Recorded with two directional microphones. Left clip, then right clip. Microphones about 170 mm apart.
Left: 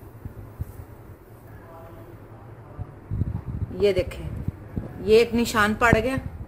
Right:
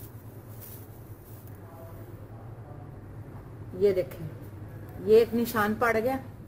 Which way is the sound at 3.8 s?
30° left (ahead or behind).